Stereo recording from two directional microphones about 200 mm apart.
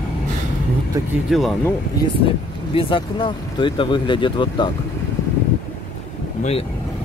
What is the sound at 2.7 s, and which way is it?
Speech, 25° left (ahead or behind).